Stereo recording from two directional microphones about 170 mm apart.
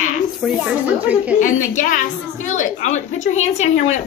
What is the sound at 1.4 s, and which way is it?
A woman's voice, 50° left (ahead or behind).